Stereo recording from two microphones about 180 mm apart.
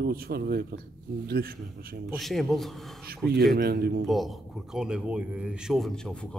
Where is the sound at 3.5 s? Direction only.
60° right (ahead or behind).